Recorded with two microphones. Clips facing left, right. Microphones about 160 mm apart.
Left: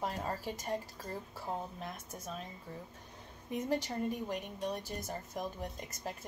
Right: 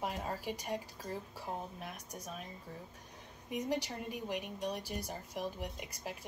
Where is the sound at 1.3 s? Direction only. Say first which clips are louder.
Left 2 dB; 15° right (ahead or behind).